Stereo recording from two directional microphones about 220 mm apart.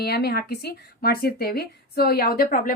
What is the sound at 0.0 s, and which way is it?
Speech, 45° left (ahead or behind).